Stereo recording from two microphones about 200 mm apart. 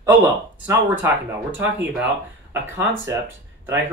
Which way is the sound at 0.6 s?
10° right (ahead or behind).